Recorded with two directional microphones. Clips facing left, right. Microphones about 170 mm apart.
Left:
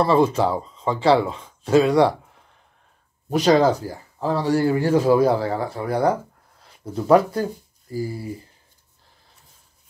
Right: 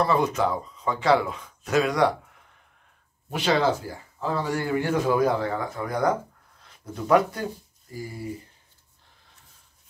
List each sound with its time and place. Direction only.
0.0 s speech: 30° left (ahead or behind)
3.3 s speech: 40° left (ahead or behind)